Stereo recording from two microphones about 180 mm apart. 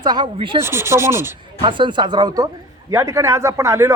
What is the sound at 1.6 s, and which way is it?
A man's voice, 25° right (ahead or behind).